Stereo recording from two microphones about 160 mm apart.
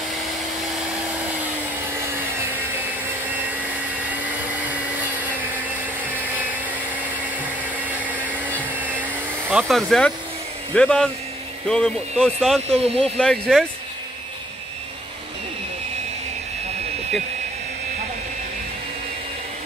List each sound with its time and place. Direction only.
5.1 s vacuum cleaner: 10° right (ahead or behind)
8.1 s vacuum cleaner: 10° right (ahead or behind)
10.7 s speech: 5° left (ahead or behind)
12.8 s speech: 40° right (ahead or behind)
13.2 s speech: 5° left (ahead or behind)